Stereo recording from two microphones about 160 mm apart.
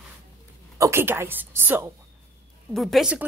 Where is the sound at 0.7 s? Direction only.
15° right (ahead or behind).